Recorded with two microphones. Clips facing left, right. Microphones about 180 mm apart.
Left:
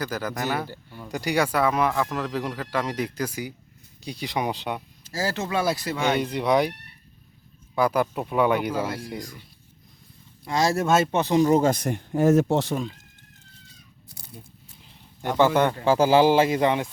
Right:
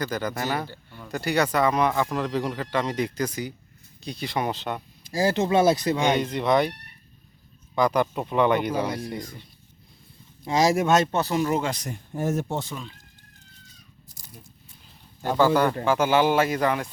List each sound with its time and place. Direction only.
0.0 s speech: 5° left (ahead or behind)
5.0 s speech: 15° right (ahead or behind)
6.1 s speech: 10° left (ahead or behind)
7.8 s speech: 5° left (ahead or behind)
10.4 s speech: 20° right (ahead or behind)
10.8 s speech: 5° left (ahead or behind)
11.5 s speech: 45° left (ahead or behind); by 12.7 s 85° left
15.4 s speech: 20° left (ahead or behind)